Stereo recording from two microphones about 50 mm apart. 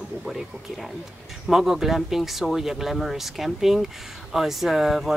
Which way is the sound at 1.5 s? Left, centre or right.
Centre.